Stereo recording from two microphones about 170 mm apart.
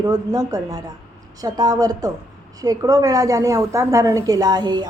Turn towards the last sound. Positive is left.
turn(degrees=-25)  # may be behind; listen again after turning